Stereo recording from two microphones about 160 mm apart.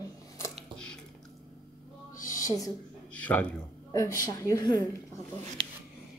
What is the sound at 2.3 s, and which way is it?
Speech, 20° left (ahead or behind).